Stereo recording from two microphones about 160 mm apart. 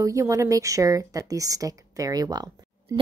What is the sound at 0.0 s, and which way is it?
A woman's voice, 20° right (ahead or behind).